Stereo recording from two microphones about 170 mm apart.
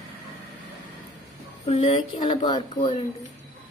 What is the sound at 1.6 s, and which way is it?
Speech, 35° left (ahead or behind).